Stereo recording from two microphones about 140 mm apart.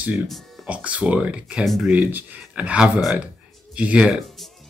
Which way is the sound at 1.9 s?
10° right (ahead or behind).